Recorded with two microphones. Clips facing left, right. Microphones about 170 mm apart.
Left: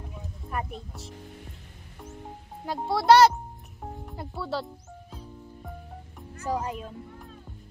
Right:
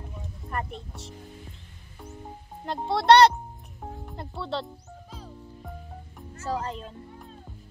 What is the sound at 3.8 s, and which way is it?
Music, centre (ahead or behind).